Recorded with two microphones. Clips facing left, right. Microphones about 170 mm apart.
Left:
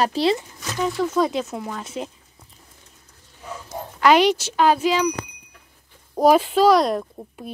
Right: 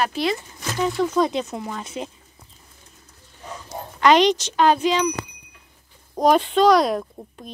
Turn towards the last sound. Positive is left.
turn(degrees=0)  # may be behind; listen again after turning